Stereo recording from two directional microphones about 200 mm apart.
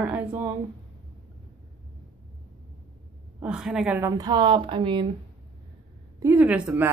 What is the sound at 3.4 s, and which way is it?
Speech, 5° right (ahead or behind).